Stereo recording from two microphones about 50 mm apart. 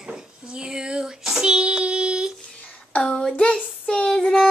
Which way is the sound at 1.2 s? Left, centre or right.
Centre.